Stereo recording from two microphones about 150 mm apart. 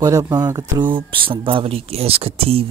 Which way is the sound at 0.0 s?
20° right (ahead or behind).